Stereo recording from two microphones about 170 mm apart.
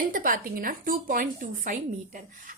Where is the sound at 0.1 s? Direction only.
55° right (ahead or behind).